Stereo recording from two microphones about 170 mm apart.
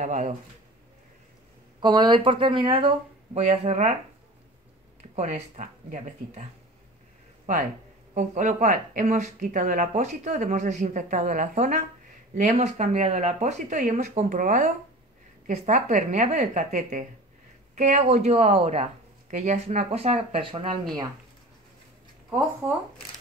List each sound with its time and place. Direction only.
0.0 s a woman's voice: 45° right (ahead or behind)
1.8 s speech: 25° right (ahead or behind); by 3.9 s 40° right (ahead or behind)
5.1 s a woman's voice: 45° right (ahead or behind)
8.1 s a woman's voice: 45° right (ahead or behind)
19.3 s speech: 45° right (ahead or behind)
22.6 s speech: 15° right (ahead or behind)